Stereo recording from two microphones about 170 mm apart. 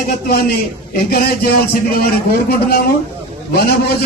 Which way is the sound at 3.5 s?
70° left (ahead or behind).